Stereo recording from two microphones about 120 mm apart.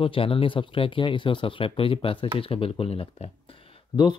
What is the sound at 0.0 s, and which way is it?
Speech, 50° left (ahead or behind).